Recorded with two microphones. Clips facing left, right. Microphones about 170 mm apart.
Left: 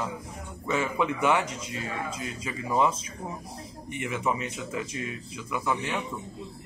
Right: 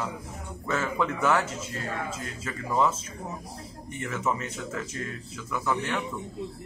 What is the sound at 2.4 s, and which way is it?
Speech, 15° left (ahead or behind).